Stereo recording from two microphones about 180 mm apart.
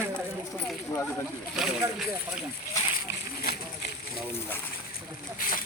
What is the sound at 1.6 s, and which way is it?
Speech, centre (ahead or behind).